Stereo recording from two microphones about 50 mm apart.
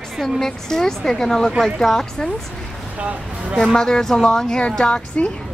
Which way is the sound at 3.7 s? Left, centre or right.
Centre.